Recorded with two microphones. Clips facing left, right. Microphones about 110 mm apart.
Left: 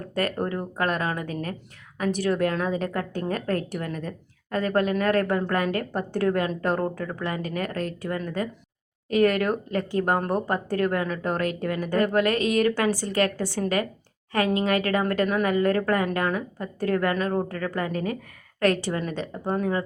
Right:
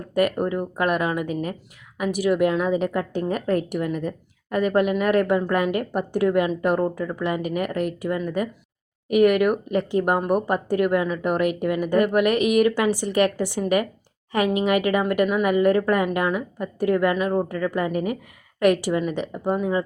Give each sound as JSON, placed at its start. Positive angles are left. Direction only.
{"t": 0.1, "sound": "speech", "side_deg": -15}